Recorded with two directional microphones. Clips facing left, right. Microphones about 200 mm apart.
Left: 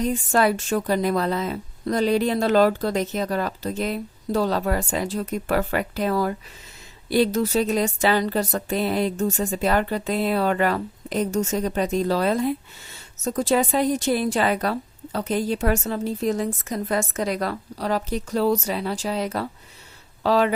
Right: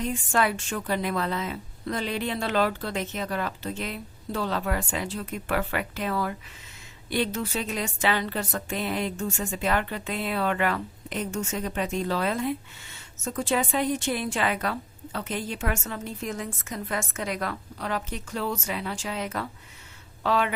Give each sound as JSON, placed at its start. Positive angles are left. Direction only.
{"t": 0.0, "sound": "a woman's voice", "side_deg": 40}